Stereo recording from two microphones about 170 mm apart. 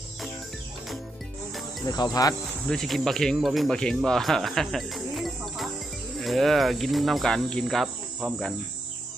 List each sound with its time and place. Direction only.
1.9 s speech: 25° left (ahead or behind)
2.6 s speech: centre (ahead or behind)